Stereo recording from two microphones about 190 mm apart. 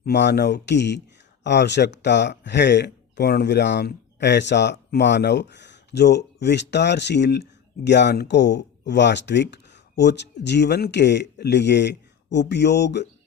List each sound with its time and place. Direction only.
0.0 s speech: 65° left (ahead or behind)